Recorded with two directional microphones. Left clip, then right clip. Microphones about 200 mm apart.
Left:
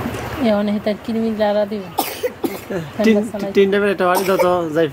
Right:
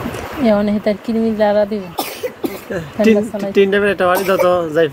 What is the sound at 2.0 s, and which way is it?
Cough, 30° left (ahead or behind).